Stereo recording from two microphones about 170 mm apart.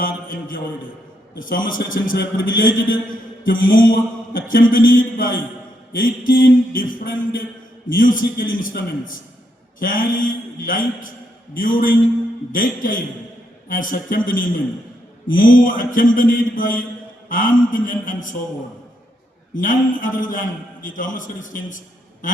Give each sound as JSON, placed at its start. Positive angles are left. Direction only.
{"t": 0.0, "sound": "mantra", "side_deg": 55}
{"t": 9.8, "sound": "a man's voice", "side_deg": 55}
{"t": 11.5, "sound": "mantra", "side_deg": 55}
{"t": 12.5, "sound": "a man's voice", "side_deg": 50}
{"t": 13.7, "sound": "mantra", "side_deg": 55}
{"t": 15.3, "sound": "a man's voice", "side_deg": 55}
{"t": 19.5, "sound": "a man's voice", "side_deg": 50}